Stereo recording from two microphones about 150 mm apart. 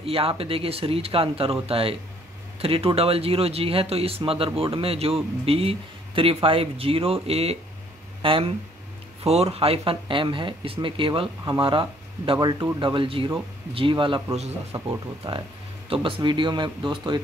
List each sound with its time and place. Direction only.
0.0 s speech: 40° right (ahead or behind)
15.9 s speech: 35° right (ahead or behind)